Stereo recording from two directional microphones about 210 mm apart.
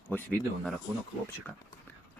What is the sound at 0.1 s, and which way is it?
Speech, centre (ahead or behind).